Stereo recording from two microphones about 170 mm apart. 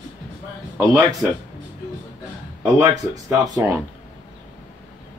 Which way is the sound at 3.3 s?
20° right (ahead or behind).